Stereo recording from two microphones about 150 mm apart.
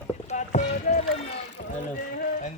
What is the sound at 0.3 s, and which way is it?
Rowboat, 50° left (ahead or behind).